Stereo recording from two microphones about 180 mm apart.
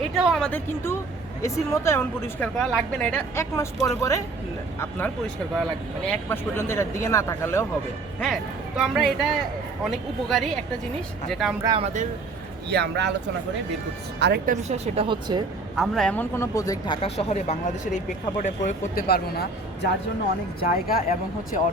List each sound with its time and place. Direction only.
0.2 s speech: centre (ahead or behind)
1.4 s speech: 15° left (ahead or behind)
8.2 s speech: centre (ahead or behind)
11.6 s speech: 25° right (ahead or behind)
12.7 s speech: 70° right (ahead or behind)
14.2 s speech: 65° right (ahead or behind)
14.5 s speech: 35° right (ahead or behind)
15.7 s speech: centre (ahead or behind); by 19.0 s 45° left (ahead or behind)
19.0 s speech: 60° left (ahead or behind)